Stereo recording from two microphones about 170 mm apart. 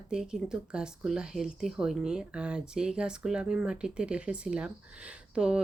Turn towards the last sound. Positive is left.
turn(degrees=-5)  # may be behind; listen again after turning